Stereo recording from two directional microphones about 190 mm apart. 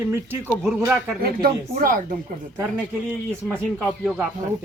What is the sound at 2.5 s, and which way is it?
Speech, 5° right (ahead or behind).